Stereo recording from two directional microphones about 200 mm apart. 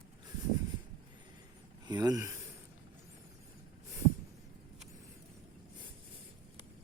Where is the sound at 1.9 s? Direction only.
20° right (ahead or behind).